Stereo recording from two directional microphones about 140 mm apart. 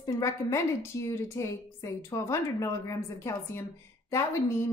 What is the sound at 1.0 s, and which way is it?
A woman's voice, 20° left (ahead or behind).